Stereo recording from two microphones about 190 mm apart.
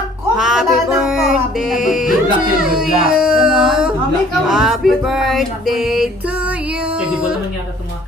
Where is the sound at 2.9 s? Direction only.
50° right (ahead or behind).